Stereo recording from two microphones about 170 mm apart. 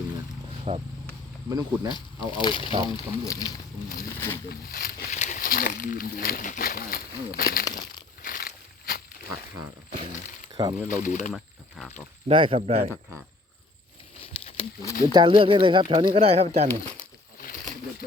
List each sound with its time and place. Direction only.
0.7 s speech: 35° right (ahead or behind)
1.5 s speech: 20° right (ahead or behind)
1.9 s speech: 30° left (ahead or behind)
4.4 s speech: 60° left (ahead or behind)
7.6 s a sound: 20° left (ahead or behind)
8.2 s a sound: 60° left (ahead or behind)
10.5 s speech: 25° right (ahead or behind)
10.8 s speech: 50° left (ahead or behind)
11.8 s speech: 5° left (ahead or behind)
12.3 s speech: 30° right (ahead or behind)
14.2 s patter: 30° left (ahead or behind)
15.0 s speech: 25° right (ahead or behind)